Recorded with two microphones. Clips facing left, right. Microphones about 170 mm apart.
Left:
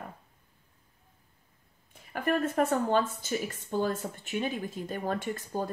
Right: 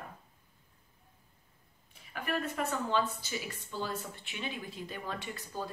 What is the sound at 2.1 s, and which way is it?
Speech, 50° left (ahead or behind).